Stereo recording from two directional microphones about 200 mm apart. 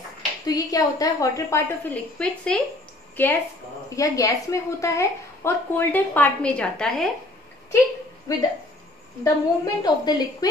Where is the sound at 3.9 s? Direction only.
15° left (ahead or behind).